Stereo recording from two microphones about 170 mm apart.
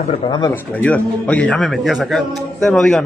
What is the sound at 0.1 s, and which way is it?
Speech, 30° left (ahead or behind).